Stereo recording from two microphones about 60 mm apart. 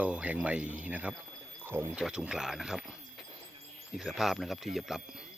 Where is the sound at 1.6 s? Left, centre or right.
Right.